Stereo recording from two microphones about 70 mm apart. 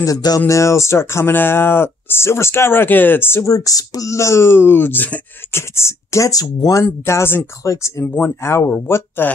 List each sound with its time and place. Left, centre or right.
0.0 s speech: left
0.5 s speech: left
3.4 s speech: left
5.5 s speech: left
8.6 s speech: left